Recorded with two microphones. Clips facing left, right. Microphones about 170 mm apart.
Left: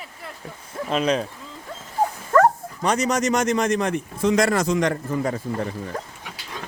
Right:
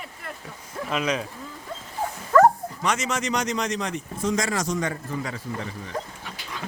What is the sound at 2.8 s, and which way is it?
Speech, 35° left (ahead or behind).